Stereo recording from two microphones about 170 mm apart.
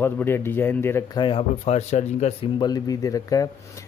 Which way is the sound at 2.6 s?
20° left (ahead or behind).